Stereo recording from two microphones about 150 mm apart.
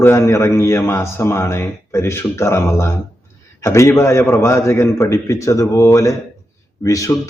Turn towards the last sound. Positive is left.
turn(degrees=20)  # may be behind; listen again after turning